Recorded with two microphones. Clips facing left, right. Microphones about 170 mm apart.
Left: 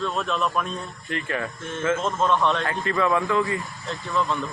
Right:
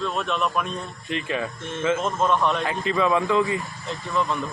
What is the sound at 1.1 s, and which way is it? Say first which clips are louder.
Speech: right 1 dB; 20° right (ahead or behind).